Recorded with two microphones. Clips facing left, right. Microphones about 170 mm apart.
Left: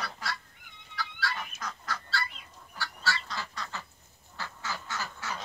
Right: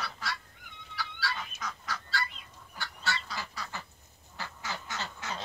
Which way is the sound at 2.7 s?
20° right (ahead or behind).